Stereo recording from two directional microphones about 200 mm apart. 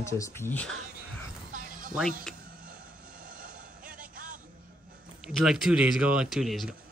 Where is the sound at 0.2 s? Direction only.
10° left (ahead or behind).